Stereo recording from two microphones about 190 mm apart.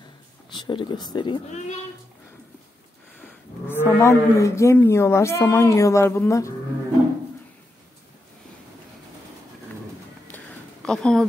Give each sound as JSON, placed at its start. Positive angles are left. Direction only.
{"t": 0.5, "sound": "speech", "side_deg": 25}
{"t": 3.2, "sound": "speech", "side_deg": 10}
{"t": 10.2, "sound": "a sound", "side_deg": 5}